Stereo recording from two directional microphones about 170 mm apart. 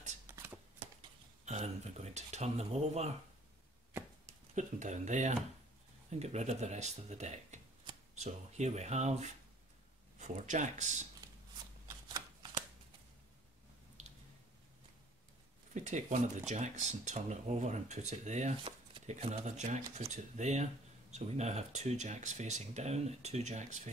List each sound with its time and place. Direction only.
0.3 s shuffling cards: 15° right (ahead or behind)
1.4 s speech: 40° right (ahead or behind)
4.6 s speech: 45° right (ahead or behind)
14.0 s squish: 40° right (ahead or behind)
15.7 s speech: 45° right (ahead or behind)